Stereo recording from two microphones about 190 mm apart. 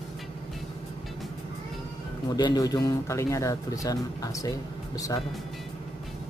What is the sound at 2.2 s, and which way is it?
Speech, 20° left (ahead or behind).